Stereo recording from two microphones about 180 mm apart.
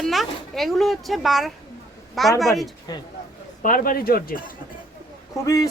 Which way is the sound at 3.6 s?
50° left (ahead or behind).